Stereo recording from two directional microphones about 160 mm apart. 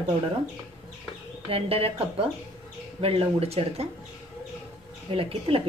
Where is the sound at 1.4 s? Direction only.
35° right (ahead or behind).